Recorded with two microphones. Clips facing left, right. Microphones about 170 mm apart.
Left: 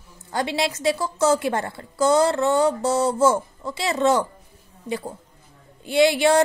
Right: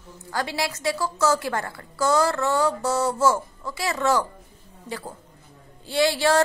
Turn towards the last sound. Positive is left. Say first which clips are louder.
# left 3 dB
turn(degrees=20)  # may be behind; listen again after turning